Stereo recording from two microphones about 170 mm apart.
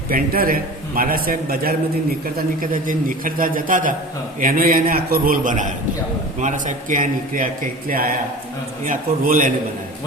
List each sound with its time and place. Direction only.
0.1 s a man's voice: 55° right (ahead or behind)